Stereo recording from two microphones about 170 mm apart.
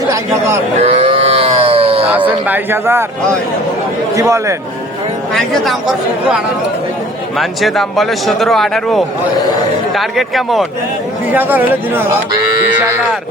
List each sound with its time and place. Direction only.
0.1 s a man's voice: 15° right (ahead or behind)
0.8 s a sound: 35° right (ahead or behind)
2.5 s speech: 15° right (ahead or behind)
4.1 s speech: 20° right (ahead or behind)
5.3 s speech: centre (ahead or behind)
7.3 s speech: centre (ahead or behind)
11.3 s speech: 10° right (ahead or behind)